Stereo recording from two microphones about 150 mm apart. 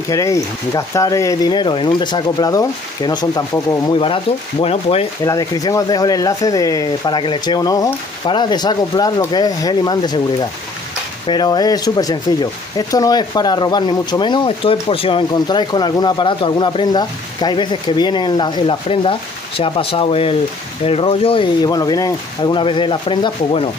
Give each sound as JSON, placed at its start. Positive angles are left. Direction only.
{"t": 0.1, "sound": "speech", "side_deg": 20}
{"t": 4.0, "sound": "speech", "side_deg": 35}
{"t": 5.2, "sound": "speech", "side_deg": 25}
{"t": 11.2, "sound": "speech", "side_deg": 30}